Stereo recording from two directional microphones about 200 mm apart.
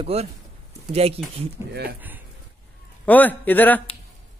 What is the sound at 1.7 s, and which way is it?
Speech, 55° right (ahead or behind).